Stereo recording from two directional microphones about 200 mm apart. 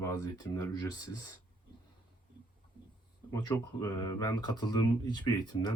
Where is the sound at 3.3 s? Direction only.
15° left (ahead or behind).